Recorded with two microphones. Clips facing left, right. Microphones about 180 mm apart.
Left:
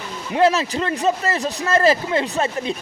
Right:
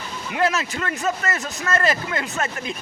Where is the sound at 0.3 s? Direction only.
30° left (ahead or behind).